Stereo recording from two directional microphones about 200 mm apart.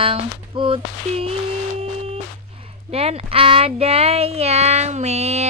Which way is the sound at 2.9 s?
30° right (ahead or behind).